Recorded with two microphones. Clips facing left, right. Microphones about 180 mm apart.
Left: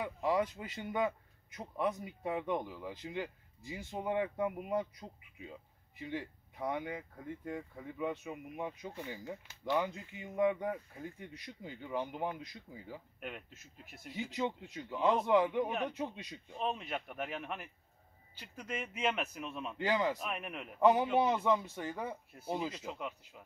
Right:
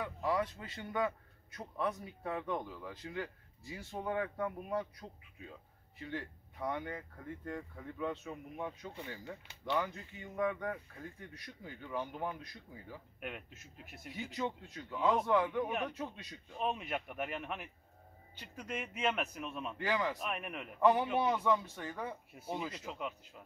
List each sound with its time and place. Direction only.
0.0 s a man's voice: 20° left (ahead or behind)
13.2 s a man's voice: centre (ahead or behind)
14.3 s a man's voice: 20° left (ahead or behind)
16.5 s a man's voice: 5° right (ahead or behind)
19.8 s a man's voice: 25° left (ahead or behind)
20.2 s a man's voice: centre (ahead or behind)
20.8 s a man's voice: 20° left (ahead or behind)
22.5 s a man's voice: 5° left (ahead or behind)